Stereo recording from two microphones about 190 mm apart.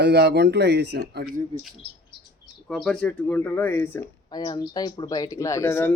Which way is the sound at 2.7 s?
Centre (ahead or behind).